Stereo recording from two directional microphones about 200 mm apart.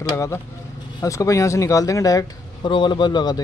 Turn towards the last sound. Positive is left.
turn(degrees=20)  # may be behind; listen again after turning